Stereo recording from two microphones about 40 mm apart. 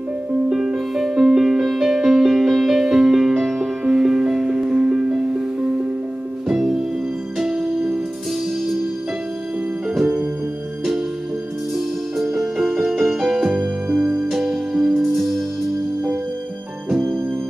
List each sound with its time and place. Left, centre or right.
0.5 s music: centre
6.5 s music: centre
9.9 s music: centre
12.2 s music: centre
15.0 s music: centre